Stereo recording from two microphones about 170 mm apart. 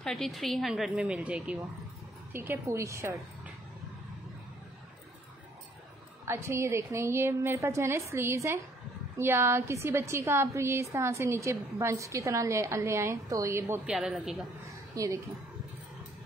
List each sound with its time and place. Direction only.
0.0 s a woman's voice: centre (ahead or behind); by 3.5 s 15° right (ahead or behind)
6.2 s a woman's voice: 15° right (ahead or behind)
13.9 s a woman's voice: 5° right (ahead or behind)
15.0 s a woman's voice: 20° right (ahead or behind)